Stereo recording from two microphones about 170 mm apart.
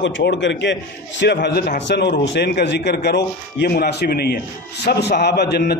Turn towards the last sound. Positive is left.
turn(degrees=70)  # may be behind; listen again after turning